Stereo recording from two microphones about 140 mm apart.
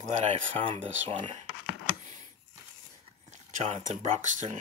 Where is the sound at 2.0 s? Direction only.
55° right (ahead or behind).